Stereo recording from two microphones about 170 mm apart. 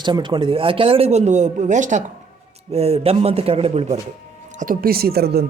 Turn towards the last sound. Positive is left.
turn(degrees=-70)  # may be behind; listen again after turning